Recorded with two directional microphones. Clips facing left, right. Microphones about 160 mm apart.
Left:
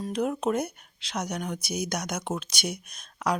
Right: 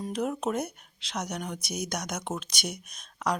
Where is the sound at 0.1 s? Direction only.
Centre (ahead or behind).